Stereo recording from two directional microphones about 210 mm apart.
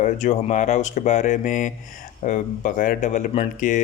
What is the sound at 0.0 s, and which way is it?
A man's voice, 35° left (ahead or behind).